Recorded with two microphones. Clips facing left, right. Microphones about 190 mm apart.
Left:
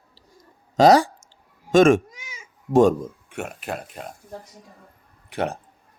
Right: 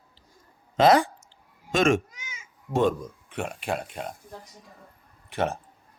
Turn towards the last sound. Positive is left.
turn(degrees=15)  # may be behind; listen again after turning